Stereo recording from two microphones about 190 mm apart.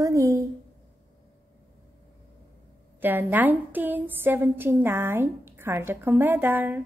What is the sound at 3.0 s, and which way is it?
A woman's voice, 10° right (ahead or behind).